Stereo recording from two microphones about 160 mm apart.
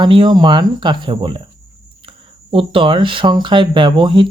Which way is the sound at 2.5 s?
30° right (ahead or behind).